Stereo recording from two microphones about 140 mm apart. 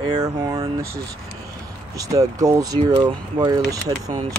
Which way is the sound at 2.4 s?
25° right (ahead or behind).